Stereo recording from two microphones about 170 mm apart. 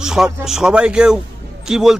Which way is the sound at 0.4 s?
5° right (ahead or behind).